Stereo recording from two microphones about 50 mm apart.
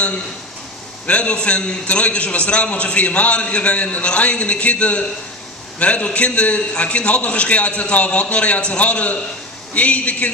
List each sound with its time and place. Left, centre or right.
1.0 s a man's voice: left